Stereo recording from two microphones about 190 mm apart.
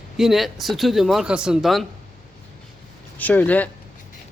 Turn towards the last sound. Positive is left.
turn(degrees=10)  # may be behind; listen again after turning